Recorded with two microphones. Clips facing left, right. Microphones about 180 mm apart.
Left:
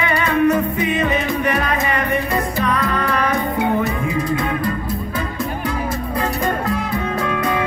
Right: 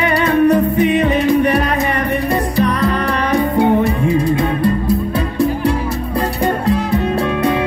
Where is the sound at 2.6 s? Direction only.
35° right (ahead or behind).